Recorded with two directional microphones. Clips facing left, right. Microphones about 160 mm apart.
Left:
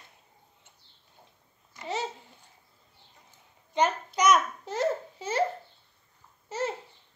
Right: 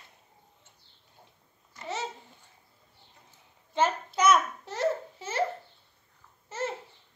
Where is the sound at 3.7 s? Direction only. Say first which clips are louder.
Left 1 dB; 5° right (ahead or behind).